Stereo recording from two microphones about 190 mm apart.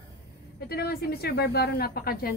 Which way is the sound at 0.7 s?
55° left (ahead or behind).